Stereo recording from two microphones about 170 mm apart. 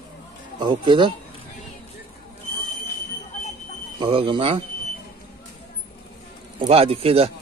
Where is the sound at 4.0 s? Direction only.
30° right (ahead or behind).